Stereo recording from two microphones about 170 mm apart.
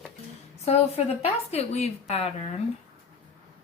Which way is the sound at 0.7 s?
40° left (ahead or behind).